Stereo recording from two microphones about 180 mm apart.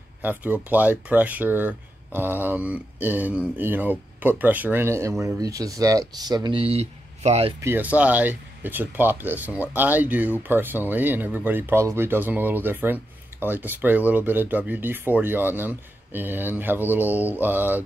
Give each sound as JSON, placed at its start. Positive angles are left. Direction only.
{"t": 0.2, "sound": "speech", "side_deg": -10}
{"t": 7.6, "sound": "speech", "side_deg": -10}